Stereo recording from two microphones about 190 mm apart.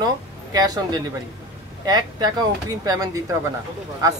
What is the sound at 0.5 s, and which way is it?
Speech, 20° right (ahead or behind).